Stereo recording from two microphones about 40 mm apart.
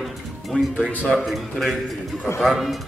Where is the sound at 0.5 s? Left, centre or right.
Left.